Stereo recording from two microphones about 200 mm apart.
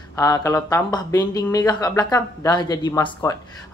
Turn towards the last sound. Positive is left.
turn(degrees=15)  # may be behind; listen again after turning